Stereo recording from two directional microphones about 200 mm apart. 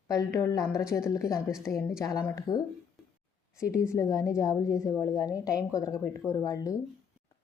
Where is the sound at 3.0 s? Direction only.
Centre (ahead or behind).